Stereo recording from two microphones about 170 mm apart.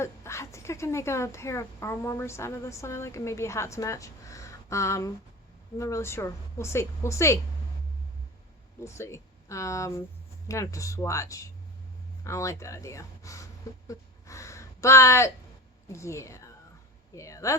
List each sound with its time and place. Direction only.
0.0 s a woman's voice: 15° left (ahead or behind)
8.8 s a woman's voice: 15° left (ahead or behind)